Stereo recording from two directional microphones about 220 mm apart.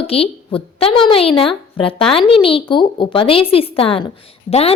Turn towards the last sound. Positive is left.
turn(degrees=25)  # may be behind; listen again after turning